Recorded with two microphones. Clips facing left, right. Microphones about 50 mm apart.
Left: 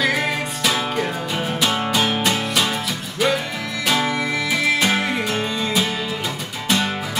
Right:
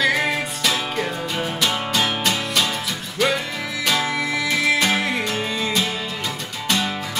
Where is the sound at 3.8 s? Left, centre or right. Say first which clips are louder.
Left 1 dB; centre.